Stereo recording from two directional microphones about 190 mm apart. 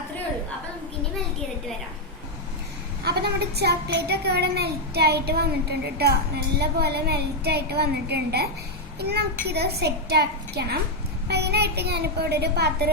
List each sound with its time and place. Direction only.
3.0 s a woman's voice: 60° right (ahead or behind)